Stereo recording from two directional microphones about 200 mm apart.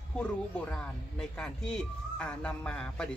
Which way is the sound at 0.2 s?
5° left (ahead or behind).